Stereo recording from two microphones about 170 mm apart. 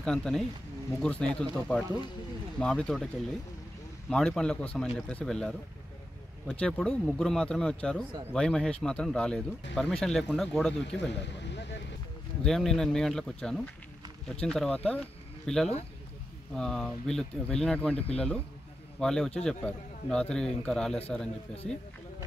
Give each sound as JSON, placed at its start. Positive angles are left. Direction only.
{"t": 0.0, "sound": "a man's voice", "side_deg": 5}
{"t": 4.1, "sound": "a man's voice", "side_deg": 5}
{"t": 11.1, "sound": "a sound", "side_deg": 90}
{"t": 12.4, "sound": "a man's voice", "side_deg": 0}